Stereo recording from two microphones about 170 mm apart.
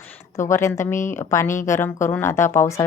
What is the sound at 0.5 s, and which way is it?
A woman's voice, 15° left (ahead or behind).